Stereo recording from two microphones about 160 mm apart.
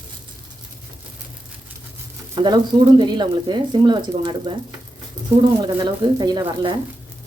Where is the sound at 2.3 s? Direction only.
25° right (ahead or behind).